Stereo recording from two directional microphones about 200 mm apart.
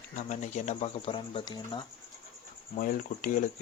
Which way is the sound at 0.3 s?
35° left (ahead or behind).